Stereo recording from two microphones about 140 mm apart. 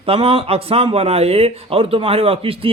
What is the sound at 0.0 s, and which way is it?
A man's voice, 40° right (ahead or behind).